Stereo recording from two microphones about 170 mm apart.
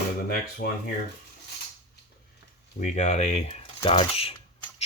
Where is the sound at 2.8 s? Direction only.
45° left (ahead or behind).